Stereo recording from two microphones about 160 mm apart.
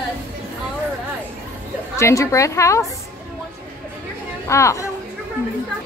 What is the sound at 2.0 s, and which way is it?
Speech, 20° left (ahead or behind).